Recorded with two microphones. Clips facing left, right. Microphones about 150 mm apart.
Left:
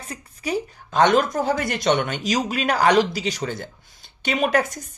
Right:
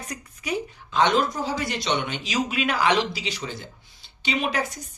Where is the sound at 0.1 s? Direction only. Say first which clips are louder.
Left 4 dB; 35° left (ahead or behind).